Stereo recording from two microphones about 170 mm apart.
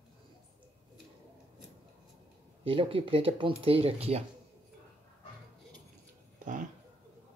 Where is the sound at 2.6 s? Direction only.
30° right (ahead or behind).